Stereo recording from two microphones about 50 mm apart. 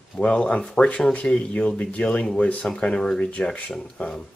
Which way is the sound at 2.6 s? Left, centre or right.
Centre.